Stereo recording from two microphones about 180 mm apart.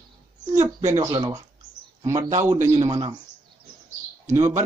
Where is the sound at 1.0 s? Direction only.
20° right (ahead or behind).